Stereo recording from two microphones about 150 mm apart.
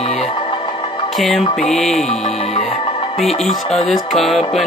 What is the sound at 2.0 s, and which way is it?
Music, 45° left (ahead or behind).